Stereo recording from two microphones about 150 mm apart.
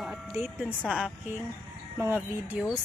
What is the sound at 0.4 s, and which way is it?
Speech, 5° right (ahead or behind).